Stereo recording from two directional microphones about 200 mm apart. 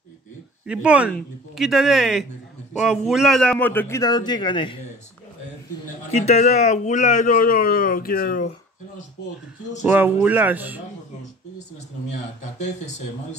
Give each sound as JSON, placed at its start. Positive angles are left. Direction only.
{"t": 0.7, "sound": "a man's voice", "side_deg": -5}
{"t": 6.1, "sound": "speech", "side_deg": 30}
{"t": 9.8, "sound": "speech", "side_deg": -10}